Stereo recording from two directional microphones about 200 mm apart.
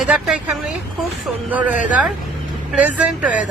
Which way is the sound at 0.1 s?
10° right (ahead or behind).